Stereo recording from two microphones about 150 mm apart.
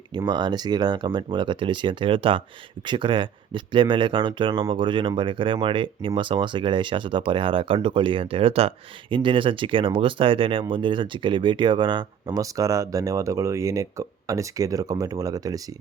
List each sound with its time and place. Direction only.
0.1 s speech: 30° right (ahead or behind)